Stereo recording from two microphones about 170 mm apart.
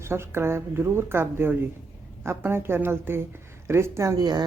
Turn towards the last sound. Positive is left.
turn(degrees=-25)  # may be behind; listen again after turning